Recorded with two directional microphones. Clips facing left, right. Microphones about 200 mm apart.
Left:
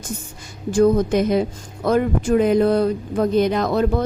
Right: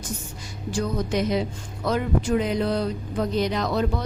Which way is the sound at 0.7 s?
50° left (ahead or behind).